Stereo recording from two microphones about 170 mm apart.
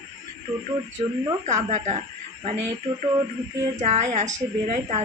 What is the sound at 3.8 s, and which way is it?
Speech, 45° right (ahead or behind).